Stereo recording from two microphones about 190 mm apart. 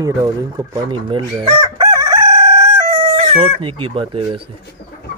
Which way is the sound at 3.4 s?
30° right (ahead or behind).